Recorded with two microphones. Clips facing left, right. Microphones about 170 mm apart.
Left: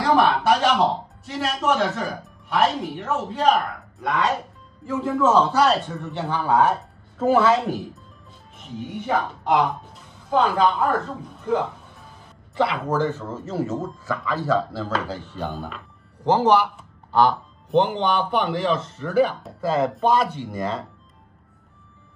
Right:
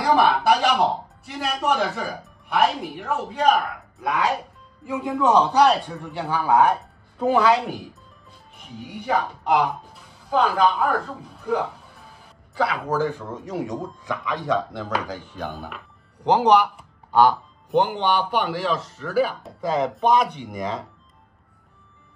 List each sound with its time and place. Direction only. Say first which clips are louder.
0.0 s speech: even; centre (ahead or behind)
5.2 s a man's voice: right 1 dB; 15° right (ahead or behind)
6.8 s a sound: even; 5° left (ahead or behind)
7.6 s speech: left 4 dB; centre (ahead or behind)
12.9 s a man's voice: left 1 dB; 10° right (ahead or behind)
13.7 s speech: left 2 dB; 5° left (ahead or behind)
15.0 s a man's voice: left 2 dB; 10° right (ahead or behind)
15.4 s speech: left 2 dB; centre (ahead or behind)
16.3 s a man's voice: right 1 dB; 15° right (ahead or behind)
17.2 s speech: right 1 dB; 5° right (ahead or behind)